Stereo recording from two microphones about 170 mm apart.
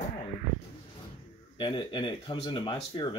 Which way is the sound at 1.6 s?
30° left (ahead or behind).